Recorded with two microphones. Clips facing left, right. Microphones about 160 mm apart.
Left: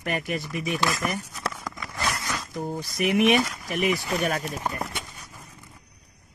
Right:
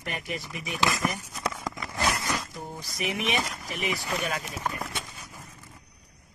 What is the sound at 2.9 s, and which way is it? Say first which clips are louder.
Speech: left 9 dB; 60° left (ahead or behind).